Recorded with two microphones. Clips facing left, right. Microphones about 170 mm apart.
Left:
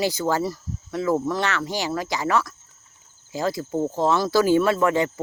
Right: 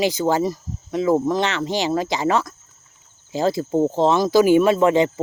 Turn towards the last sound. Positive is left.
turn(degrees=-20)  # may be behind; listen again after turning